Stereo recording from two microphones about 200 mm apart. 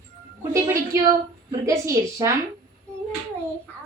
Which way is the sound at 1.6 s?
15° right (ahead or behind).